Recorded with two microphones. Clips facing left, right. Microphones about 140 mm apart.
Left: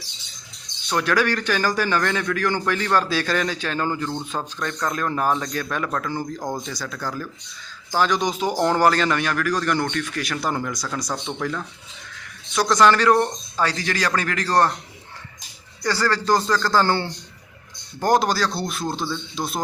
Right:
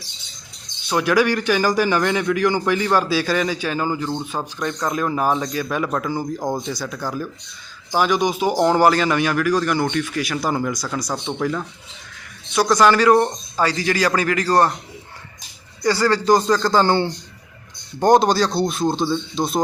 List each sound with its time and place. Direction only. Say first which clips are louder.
0.9 s a man's voice: right 4 dB; 10° right (ahead or behind)
15.8 s a man's voice: right 4 dB; 15° right (ahead or behind)